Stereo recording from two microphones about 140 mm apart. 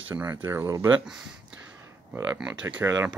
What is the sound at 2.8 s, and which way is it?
Speech, 20° right (ahead or behind).